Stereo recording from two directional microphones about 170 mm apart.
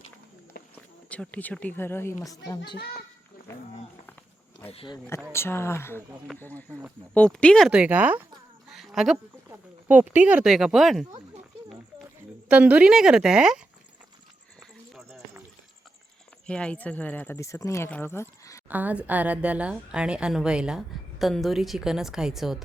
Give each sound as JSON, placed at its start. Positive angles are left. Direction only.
{"t": 0.8, "sound": "speech", "side_deg": 10}
{"t": 3.5, "sound": "speech", "side_deg": 15}
{"t": 4.7, "sound": "speech", "side_deg": 30}
{"t": 5.3, "sound": "speech", "side_deg": 15}
{"t": 7.7, "sound": "speech", "side_deg": -10}
{"t": 8.7, "sound": "a sound", "side_deg": 0}
{"t": 9.5, "sound": "a woman's voice", "side_deg": -10}
{"t": 12.5, "sound": "a woman's voice", "side_deg": -10}
{"t": 16.5, "sound": "speech", "side_deg": 5}
{"t": 18.7, "sound": "a woman's voice", "side_deg": -10}